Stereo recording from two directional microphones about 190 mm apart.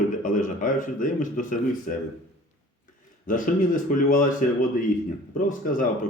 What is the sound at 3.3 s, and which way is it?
A man's voice, 45° left (ahead or behind).